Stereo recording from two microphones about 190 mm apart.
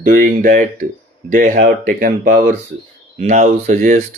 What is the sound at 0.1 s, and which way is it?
Speech, 45° right (ahead or behind).